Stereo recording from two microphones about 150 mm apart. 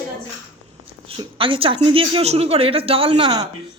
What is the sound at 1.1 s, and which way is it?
Speech, 35° right (ahead or behind).